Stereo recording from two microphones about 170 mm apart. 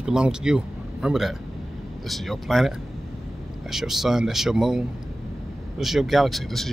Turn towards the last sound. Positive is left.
turn(degrees=0)  # may be behind; listen again after turning